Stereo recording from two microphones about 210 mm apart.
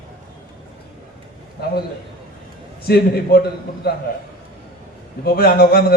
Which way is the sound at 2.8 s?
45° left (ahead or behind).